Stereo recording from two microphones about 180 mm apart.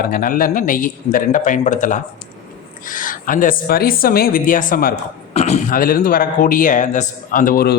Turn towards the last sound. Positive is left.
turn(degrees=55)  # may be behind; listen again after turning